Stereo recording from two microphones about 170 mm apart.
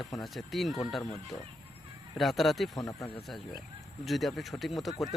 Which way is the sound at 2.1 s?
Centre (ahead or behind).